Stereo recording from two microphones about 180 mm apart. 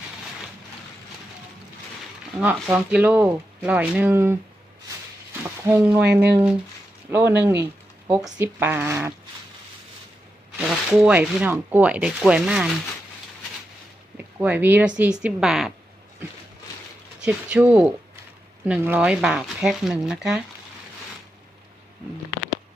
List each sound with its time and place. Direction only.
2.4 s speech: 10° right (ahead or behind)
5.6 s speech: 10° right (ahead or behind)
7.1 s speech: 15° right (ahead or behind)
10.6 s speech: 5° right (ahead or behind)
14.3 s speech: 10° right (ahead or behind)
17.2 s speech: 5° right (ahead or behind)